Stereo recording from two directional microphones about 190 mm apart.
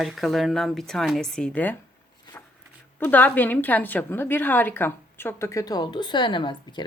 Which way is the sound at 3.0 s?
10° left (ahead or behind).